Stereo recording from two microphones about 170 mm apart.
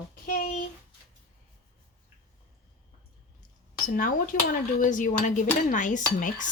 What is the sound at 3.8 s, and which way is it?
Speech, 55° left (ahead or behind).